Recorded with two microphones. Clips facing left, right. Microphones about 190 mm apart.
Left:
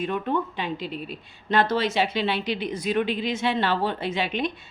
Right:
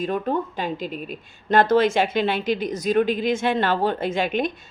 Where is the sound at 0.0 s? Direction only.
40° right (ahead or behind).